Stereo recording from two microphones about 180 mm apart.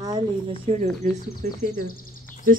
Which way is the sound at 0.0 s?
20° right (ahead or behind).